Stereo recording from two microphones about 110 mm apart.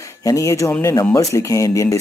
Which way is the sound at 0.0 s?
30° left (ahead or behind).